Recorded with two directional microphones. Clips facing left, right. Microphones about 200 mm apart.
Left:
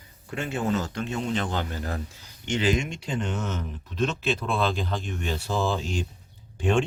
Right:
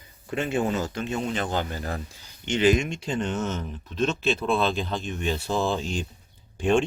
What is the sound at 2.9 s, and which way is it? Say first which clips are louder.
Speech: right 2 dB; 25° right (ahead or behind).